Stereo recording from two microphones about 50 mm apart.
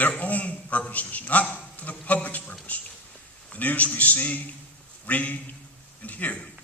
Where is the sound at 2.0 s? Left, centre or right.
Left.